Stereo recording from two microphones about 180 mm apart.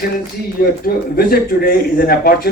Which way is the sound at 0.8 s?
55° left (ahead or behind).